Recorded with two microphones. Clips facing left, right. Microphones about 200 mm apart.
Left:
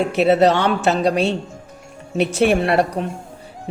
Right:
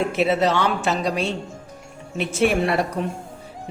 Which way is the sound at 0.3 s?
65° left (ahead or behind).